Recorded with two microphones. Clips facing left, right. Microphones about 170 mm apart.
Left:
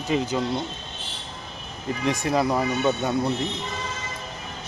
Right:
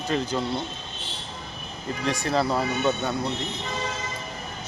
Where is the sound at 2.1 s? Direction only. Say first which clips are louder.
Left 2 dB; 15° left (ahead or behind).